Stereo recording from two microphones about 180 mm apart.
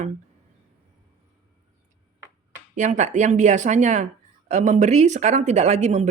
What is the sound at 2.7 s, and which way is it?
Speech, 40° right (ahead or behind).